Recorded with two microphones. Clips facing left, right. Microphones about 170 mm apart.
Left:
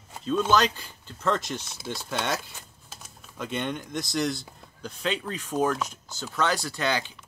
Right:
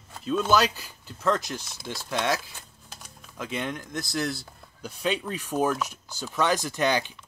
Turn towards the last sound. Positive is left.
turn(degrees=-15)  # may be behind; listen again after turning